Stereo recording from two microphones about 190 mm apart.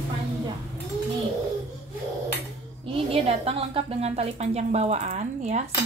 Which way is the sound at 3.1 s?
30° right (ahead or behind).